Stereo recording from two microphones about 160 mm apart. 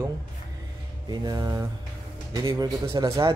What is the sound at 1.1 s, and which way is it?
Speech, 25° right (ahead or behind).